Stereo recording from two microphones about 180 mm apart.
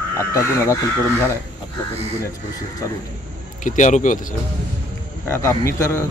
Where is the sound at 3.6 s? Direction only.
45° left (ahead or behind).